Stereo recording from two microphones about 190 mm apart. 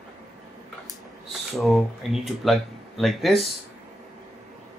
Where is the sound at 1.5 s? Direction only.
Centre (ahead or behind).